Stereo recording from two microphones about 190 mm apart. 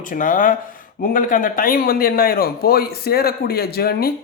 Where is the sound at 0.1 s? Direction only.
45° left (ahead or behind).